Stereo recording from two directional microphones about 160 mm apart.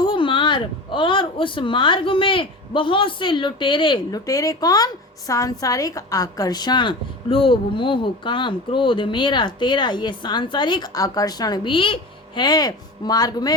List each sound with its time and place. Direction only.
0.0 s a woman's voice: 30° left (ahead or behind)